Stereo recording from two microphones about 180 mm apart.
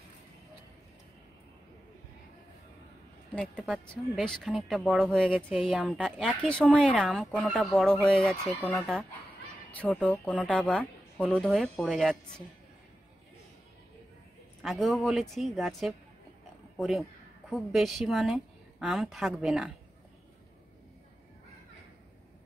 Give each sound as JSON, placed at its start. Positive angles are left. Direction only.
{"t": 4.2, "sound": "a woman's voice", "side_deg": 0}
{"t": 7.8, "sound": "a woman's voice", "side_deg": 5}
{"t": 14.6, "sound": "a woman's voice", "side_deg": 0}